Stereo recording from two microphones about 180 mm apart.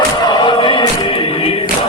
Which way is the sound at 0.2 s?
25° left (ahead or behind).